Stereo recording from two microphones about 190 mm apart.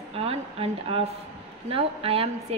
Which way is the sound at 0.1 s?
30° right (ahead or behind).